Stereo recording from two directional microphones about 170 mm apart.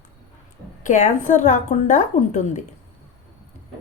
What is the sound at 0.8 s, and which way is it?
Speech, 50° left (ahead or behind).